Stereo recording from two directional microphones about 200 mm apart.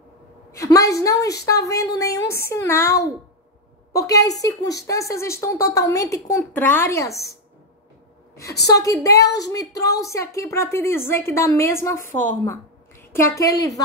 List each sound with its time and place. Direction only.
0.5 s a woman's voice: 15° left (ahead or behind)
8.6 s a woman's voice: 15° left (ahead or behind)